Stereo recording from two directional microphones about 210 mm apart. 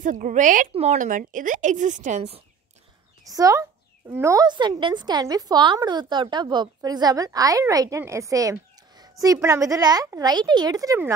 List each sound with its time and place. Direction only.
0.0 s a woman's voice: 40° right (ahead or behind)
3.3 s speech: 15° right (ahead or behind)